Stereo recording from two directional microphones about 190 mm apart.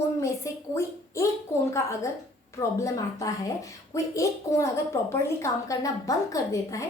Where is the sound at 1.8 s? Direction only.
15° left (ahead or behind).